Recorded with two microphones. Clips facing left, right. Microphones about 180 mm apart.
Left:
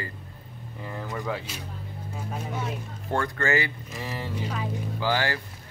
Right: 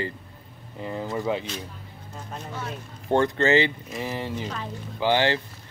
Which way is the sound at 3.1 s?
25° right (ahead or behind).